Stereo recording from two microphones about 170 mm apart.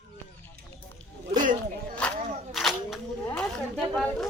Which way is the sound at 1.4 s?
50° right (ahead or behind).